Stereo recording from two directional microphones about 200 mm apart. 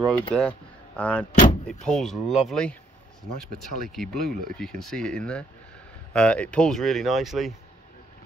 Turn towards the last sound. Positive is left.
turn(degrees=0)  # may be behind; listen again after turning